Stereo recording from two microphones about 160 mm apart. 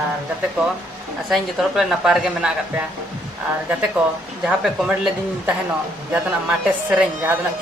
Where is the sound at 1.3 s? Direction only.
Centre (ahead or behind).